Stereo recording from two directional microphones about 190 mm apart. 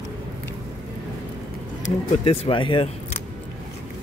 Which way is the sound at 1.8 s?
30° left (ahead or behind).